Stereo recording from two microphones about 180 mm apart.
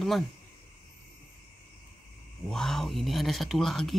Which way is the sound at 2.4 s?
Centre (ahead or behind).